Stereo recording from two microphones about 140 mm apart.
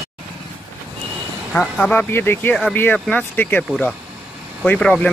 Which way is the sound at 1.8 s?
10° left (ahead or behind).